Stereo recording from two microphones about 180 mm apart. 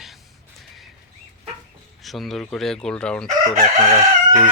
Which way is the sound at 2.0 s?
Centre (ahead or behind).